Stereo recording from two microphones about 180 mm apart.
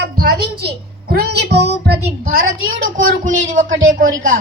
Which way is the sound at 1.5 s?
65° right (ahead or behind).